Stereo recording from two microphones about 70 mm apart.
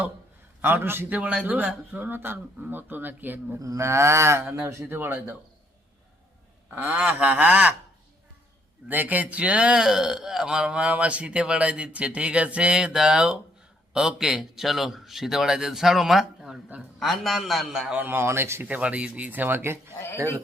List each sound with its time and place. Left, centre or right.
0.6 s a sound: right
1.5 s speech: right
3.6 s a sound: right
4.9 s speech: right
6.7 s speech: right
8.9 s a man's voice: right; by 17.9 s centre
17.9 s a sound: right
18.6 s speech: right
20.1 s speech: right